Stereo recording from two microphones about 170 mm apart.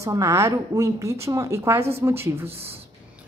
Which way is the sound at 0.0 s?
20° right (ahead or behind).